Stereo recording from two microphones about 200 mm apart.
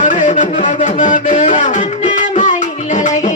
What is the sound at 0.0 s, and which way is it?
Music, 40° left (ahead or behind).